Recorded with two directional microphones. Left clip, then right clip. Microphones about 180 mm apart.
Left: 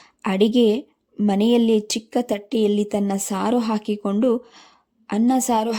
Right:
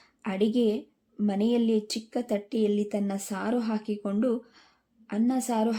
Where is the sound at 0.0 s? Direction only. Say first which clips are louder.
Left 9 dB; 40° left (ahead or behind).